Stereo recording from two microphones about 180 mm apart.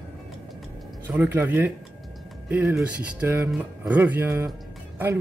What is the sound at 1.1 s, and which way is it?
Speech, 10° right (ahead or behind).